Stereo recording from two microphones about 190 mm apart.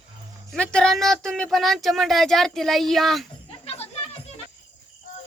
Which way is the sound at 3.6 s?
35° left (ahead or behind).